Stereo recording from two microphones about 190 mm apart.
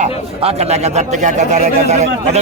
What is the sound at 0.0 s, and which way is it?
Speech, 35° right (ahead or behind).